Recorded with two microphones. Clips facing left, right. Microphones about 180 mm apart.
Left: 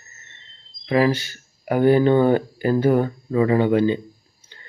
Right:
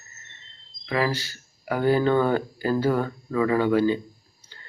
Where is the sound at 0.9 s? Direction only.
20° left (ahead or behind).